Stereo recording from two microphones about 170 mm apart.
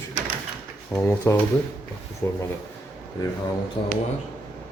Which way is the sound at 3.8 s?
25° left (ahead or behind).